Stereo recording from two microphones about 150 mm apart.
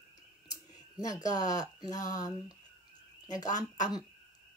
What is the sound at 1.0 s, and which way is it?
A woman's voice, 25° left (ahead or behind).